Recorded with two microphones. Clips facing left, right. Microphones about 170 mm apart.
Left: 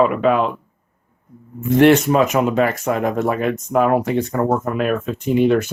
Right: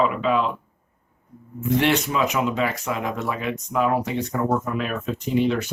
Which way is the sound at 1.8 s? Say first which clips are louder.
Left 9 dB; 50° left (ahead or behind).